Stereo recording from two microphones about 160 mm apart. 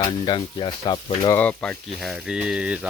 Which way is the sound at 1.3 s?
10° left (ahead or behind).